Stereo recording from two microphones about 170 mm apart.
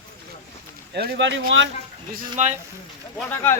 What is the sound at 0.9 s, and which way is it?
Speech, 70° right (ahead or behind).